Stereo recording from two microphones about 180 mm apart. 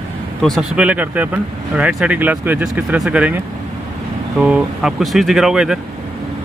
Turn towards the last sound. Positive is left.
turn(degrees=-5)  # may be behind; listen again after turning